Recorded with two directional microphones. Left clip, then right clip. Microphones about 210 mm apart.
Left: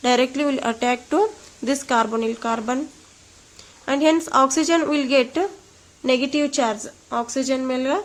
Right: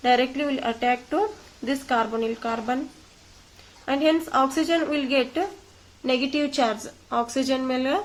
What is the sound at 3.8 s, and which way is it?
A woman's voice, 40° left (ahead or behind).